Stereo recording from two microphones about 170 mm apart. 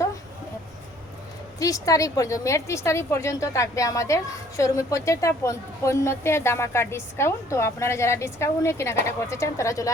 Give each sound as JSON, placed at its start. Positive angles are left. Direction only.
{"t": 1.5, "sound": "a woman's voice", "side_deg": 20}